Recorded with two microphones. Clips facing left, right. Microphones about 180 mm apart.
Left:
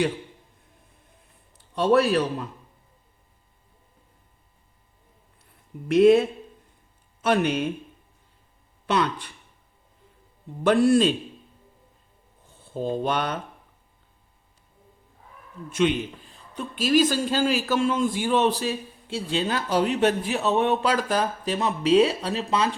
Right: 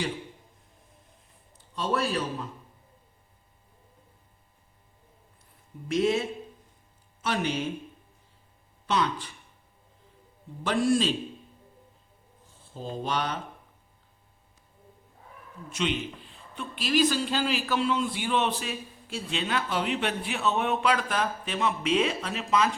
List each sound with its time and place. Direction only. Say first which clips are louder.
1.5 s speech: left 9 dB; 65° left (ahead or behind)
5.9 s speech: left 9 dB; 60° left (ahead or behind)
8.9 s speech: left 3 dB; 60° left (ahead or behind)
10.6 s speech: left 6 dB; 60° left (ahead or behind)
12.7 s speech: left 6 dB; 60° left (ahead or behind)
15.7 s a man's voice: left 7 dB; 50° left (ahead or behind); by 22.7 s 30° left (ahead or behind)